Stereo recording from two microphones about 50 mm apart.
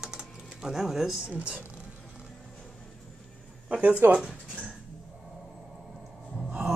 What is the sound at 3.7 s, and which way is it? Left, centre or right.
Speech, right.